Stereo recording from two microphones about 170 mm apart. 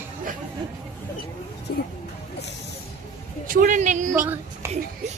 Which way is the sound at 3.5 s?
50° right (ahead or behind).